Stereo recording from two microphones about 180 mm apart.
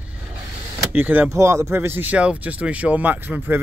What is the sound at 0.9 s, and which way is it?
Speech, 10° right (ahead or behind).